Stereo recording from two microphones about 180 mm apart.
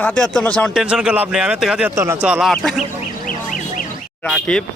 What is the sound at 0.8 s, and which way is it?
Speech, 5° right (ahead or behind).